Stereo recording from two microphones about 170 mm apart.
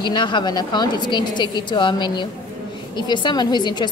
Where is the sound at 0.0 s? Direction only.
25° left (ahead or behind).